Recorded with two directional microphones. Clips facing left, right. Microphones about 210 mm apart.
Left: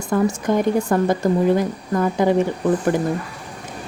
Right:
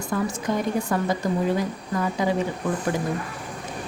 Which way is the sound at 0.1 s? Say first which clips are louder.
Left 7 dB; 45° left (ahead or behind).